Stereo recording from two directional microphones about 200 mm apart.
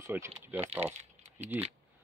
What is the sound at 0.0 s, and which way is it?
Speech, 10° right (ahead or behind).